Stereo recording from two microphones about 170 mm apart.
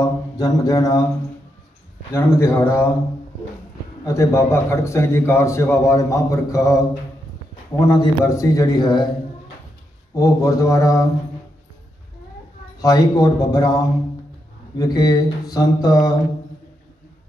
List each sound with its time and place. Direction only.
0.0 s mantra: 20° left (ahead or behind)
2.1 s a man's voice: 15° left (ahead or behind)
4.0 s a man's voice: 15° left (ahead or behind)
7.9 s mantra: 20° left (ahead or behind)
10.1 s mantra: 20° left (ahead or behind)
12.8 s mantra: 20° left (ahead or behind)